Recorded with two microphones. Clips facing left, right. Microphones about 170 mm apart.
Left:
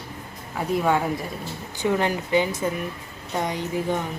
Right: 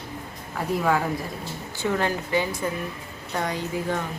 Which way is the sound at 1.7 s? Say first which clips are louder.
Left 2 dB; 15° left (ahead or behind).